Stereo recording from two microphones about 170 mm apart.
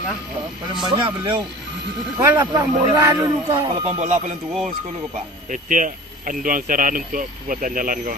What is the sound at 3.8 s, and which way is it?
Speech, 40° right (ahead or behind).